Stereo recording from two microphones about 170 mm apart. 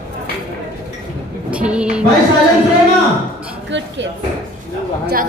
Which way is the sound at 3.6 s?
90° right.